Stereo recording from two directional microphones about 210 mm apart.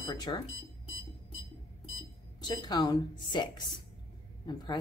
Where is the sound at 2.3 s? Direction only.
20° left (ahead or behind).